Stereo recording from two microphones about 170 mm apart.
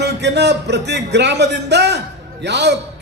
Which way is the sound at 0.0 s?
90° right.